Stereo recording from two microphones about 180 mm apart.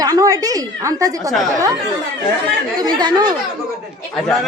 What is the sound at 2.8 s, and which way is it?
Speech, 20° right (ahead or behind).